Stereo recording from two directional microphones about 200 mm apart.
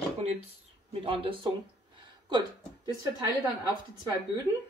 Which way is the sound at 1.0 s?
25° right (ahead or behind).